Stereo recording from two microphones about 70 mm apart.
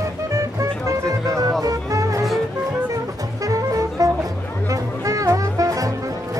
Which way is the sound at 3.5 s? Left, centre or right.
Right.